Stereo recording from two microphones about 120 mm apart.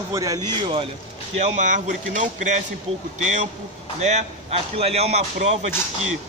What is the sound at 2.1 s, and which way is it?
Speech, 90° right.